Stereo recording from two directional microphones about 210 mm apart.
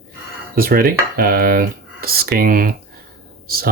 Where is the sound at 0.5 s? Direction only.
45° right (ahead or behind).